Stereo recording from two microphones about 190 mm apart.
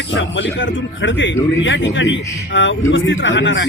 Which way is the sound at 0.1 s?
80° left.